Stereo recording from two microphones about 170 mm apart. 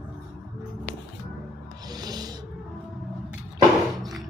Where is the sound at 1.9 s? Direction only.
25° right (ahead or behind).